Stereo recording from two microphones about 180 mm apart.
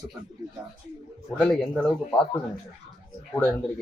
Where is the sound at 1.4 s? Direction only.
5° left (ahead or behind).